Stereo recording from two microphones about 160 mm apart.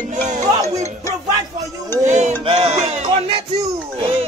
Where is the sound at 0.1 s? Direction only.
50° right (ahead or behind).